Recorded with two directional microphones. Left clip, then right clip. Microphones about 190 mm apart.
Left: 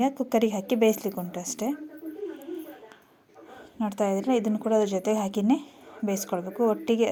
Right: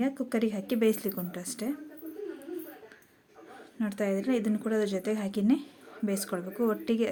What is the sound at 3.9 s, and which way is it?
Speech, 10° left (ahead or behind).